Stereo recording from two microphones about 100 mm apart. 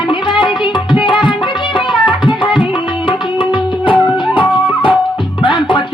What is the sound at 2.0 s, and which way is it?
Tabla, 55° left (ahead or behind).